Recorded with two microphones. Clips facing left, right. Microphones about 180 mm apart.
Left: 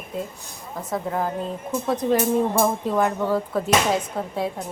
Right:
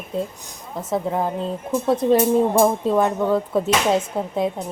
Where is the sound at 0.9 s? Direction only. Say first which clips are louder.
Right 3 dB; 20° right (ahead or behind).